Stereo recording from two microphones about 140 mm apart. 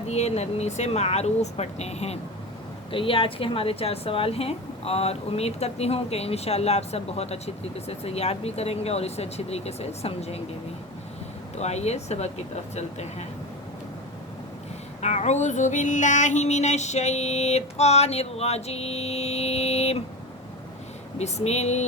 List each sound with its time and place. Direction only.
0.1 s a woman's voice: 50° left (ahead or behind)
2.9 s a woman's voice: 40° left (ahead or behind)
11.5 s a woman's voice: 50° left (ahead or behind)
15.0 s a woman's voice: 55° left (ahead or behind)
21.2 s a woman's voice: 50° left (ahead or behind)